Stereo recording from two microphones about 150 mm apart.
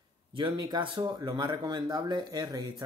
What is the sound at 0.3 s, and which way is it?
Speech, 30° right (ahead or behind).